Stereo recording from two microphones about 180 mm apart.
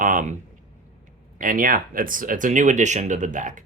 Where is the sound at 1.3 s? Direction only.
50° right (ahead or behind).